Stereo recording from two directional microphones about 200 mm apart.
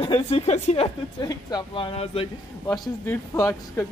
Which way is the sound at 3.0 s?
15° left (ahead or behind).